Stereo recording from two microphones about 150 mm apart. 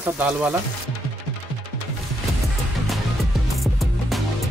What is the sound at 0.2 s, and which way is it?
Speech, 10° right (ahead or behind).